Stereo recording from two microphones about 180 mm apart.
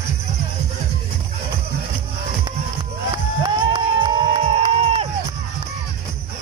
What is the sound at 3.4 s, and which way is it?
Run, 30° right (ahead or behind).